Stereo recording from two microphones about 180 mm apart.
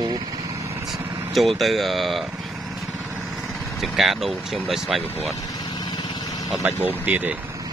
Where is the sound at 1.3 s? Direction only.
Centre (ahead or behind).